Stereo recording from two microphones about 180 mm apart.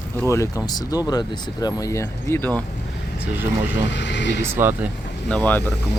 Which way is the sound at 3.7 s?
75° left (ahead or behind).